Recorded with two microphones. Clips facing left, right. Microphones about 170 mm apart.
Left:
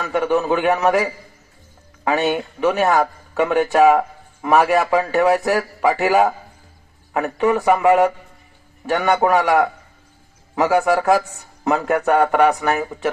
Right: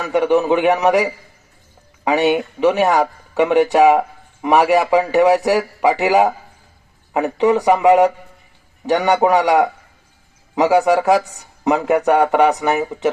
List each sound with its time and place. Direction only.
0.0 s a man's voice: 15° right (ahead or behind)